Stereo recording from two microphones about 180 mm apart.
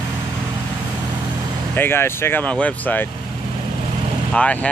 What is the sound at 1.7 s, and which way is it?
Speech, 10° left (ahead or behind).